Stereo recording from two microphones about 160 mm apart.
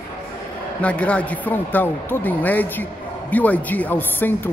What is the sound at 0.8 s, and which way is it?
Speech, 10° left (ahead or behind).